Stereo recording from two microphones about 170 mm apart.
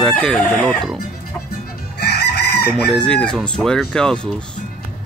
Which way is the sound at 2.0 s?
70° left (ahead or behind).